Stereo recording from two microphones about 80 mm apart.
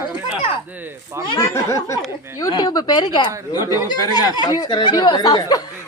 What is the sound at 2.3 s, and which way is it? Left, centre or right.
Speech, left.